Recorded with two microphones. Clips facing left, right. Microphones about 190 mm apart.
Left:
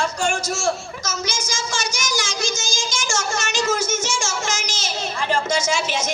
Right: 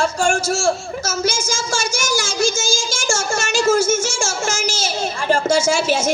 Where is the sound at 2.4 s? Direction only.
10° right (ahead or behind).